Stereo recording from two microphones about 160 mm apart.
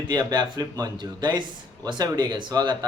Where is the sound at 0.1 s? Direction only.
25° right (ahead or behind).